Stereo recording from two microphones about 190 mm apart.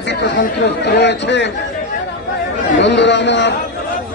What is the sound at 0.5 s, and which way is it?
Music, 65° left (ahead or behind).